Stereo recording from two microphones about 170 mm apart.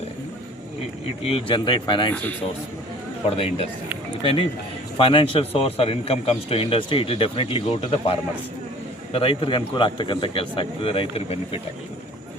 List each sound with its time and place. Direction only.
1.2 s speech: 35° left (ahead or behind)
3.2 s a man's voice: 35° left (ahead or behind)
9.1 s a man's voice: 30° left (ahead or behind)